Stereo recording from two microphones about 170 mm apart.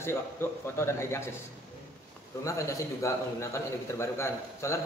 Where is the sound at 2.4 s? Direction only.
20° left (ahead or behind).